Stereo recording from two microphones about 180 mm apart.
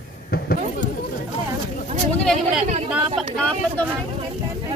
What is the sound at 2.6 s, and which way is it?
Chatter, 40° right (ahead or behind).